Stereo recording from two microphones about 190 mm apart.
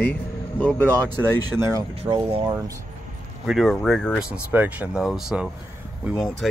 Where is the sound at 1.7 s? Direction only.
20° right (ahead or behind).